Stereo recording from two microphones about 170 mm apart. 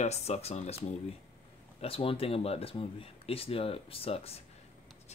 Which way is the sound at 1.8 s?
35° left (ahead or behind).